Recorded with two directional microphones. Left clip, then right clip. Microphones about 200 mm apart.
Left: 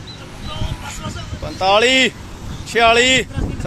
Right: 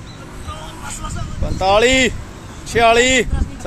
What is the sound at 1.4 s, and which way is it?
Speech, 10° right (ahead or behind).